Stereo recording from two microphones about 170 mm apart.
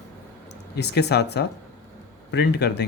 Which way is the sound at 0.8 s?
75° left (ahead or behind).